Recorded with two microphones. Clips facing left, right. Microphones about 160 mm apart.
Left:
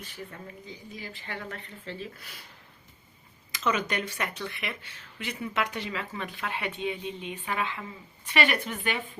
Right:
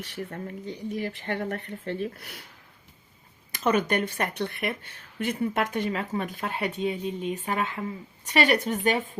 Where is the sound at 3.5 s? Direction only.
55° right (ahead or behind).